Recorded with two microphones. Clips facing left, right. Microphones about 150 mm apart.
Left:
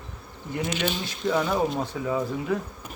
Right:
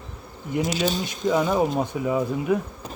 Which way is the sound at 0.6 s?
40° right (ahead or behind).